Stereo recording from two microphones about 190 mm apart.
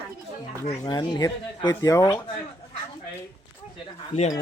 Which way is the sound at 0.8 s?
20° left (ahead or behind).